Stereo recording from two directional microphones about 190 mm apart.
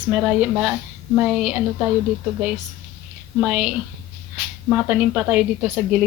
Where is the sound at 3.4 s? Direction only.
5° right (ahead or behind).